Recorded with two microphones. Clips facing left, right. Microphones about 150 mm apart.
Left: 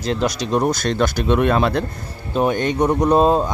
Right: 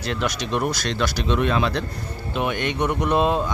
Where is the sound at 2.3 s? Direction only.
40° left (ahead or behind).